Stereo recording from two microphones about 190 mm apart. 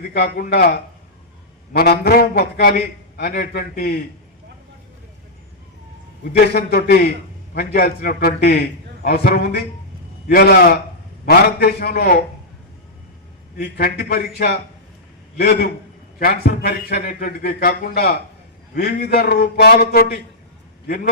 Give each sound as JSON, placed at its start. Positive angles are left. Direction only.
{"t": 0.1, "sound": "a man's voice", "side_deg": 50}
{"t": 1.7, "sound": "a man's voice", "side_deg": 55}
{"t": 6.5, "sound": "a man's voice", "side_deg": 55}
{"t": 13.6, "sound": "a man's voice", "side_deg": 55}